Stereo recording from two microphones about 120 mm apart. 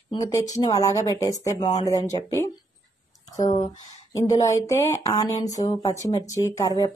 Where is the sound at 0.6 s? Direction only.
30° left (ahead or behind).